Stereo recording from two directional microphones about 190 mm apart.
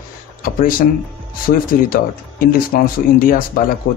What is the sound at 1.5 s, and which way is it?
Speech, 50° left (ahead or behind).